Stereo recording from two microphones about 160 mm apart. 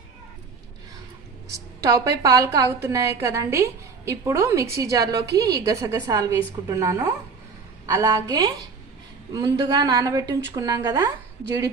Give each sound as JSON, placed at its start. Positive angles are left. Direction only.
{"t": 1.5, "sound": "a woman's voice", "side_deg": -20}